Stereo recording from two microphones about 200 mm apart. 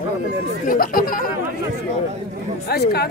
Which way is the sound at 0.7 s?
45° left (ahead or behind).